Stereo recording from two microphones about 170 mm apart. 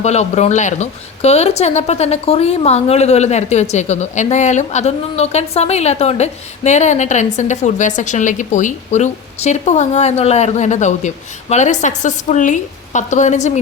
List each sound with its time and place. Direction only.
0.0 s a woman's voice: 40° left (ahead or behind)